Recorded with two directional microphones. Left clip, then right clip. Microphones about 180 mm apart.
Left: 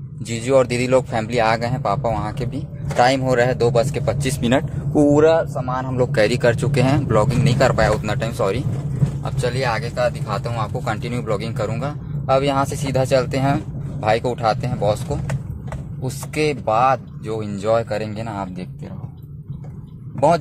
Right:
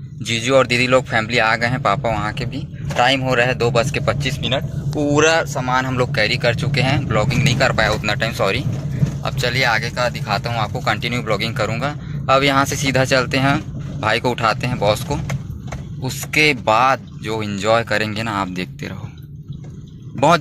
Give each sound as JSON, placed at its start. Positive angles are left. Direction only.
{"t": 0.3, "sound": "speech", "side_deg": 10}
{"t": 4.4, "sound": "speech", "side_deg": 40}
{"t": 5.3, "sound": "speech", "side_deg": -30}
{"t": 6.1, "sound": "speech", "side_deg": 35}
{"t": 16.0, "sound": "speech", "side_deg": 10}